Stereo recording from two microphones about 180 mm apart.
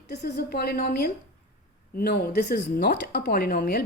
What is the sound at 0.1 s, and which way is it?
A woman's voice, 65° left (ahead or behind).